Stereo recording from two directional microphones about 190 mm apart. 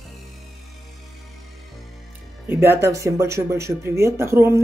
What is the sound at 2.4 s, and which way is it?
Speech, 15° right (ahead or behind).